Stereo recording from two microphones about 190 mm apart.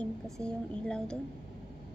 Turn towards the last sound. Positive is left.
turn(degrees=5)  # may be behind; listen again after turning